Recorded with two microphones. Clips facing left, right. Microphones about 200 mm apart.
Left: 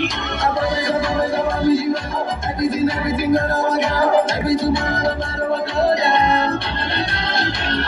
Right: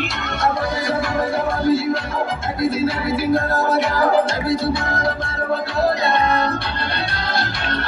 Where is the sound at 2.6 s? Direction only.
15° left (ahead or behind).